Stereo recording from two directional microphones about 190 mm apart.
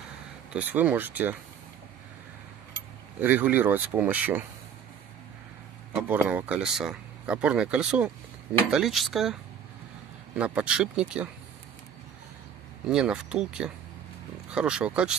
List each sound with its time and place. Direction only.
0.5 s speech: 10° right (ahead or behind)
3.2 s speech: 10° right (ahead or behind)
5.9 s speech: 10° right (ahead or behind)
12.8 s speech: 5° right (ahead or behind)